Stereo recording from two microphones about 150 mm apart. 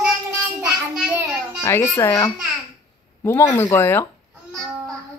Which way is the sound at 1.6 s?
15° left (ahead or behind).